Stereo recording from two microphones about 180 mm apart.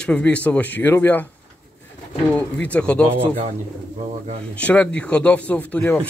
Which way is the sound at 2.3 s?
5° left (ahead or behind).